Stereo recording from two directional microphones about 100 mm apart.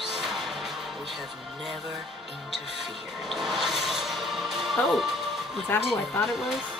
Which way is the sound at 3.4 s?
5° right (ahead or behind).